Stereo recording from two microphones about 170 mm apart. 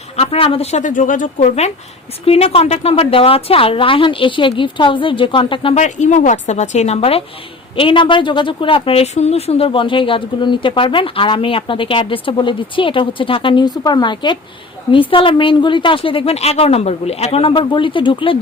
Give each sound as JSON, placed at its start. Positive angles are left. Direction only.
{"t": 0.2, "sound": "a woman's voice", "side_deg": 35}
{"t": 5.8, "sound": "a woman's voice", "side_deg": 45}